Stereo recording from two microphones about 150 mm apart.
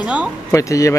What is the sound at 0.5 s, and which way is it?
Speech, 20° left (ahead or behind).